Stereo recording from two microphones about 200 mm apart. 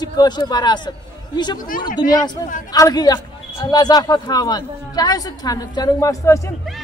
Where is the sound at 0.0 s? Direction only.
20° left (ahead or behind).